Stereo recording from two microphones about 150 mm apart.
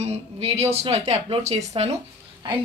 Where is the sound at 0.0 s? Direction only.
45° right (ahead or behind).